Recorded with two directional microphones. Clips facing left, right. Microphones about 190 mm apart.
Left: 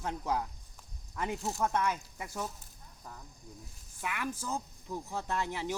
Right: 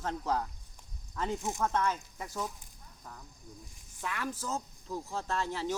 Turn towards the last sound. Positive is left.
turn(degrees=15)  # may be behind; listen again after turning